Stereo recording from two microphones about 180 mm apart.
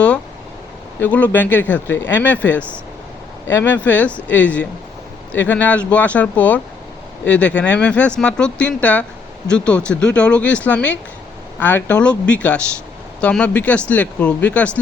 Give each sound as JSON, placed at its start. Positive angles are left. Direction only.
{"t": 1.0, "sound": "speech", "side_deg": 10}